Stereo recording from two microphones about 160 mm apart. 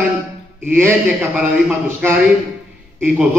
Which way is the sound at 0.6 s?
15° right (ahead or behind).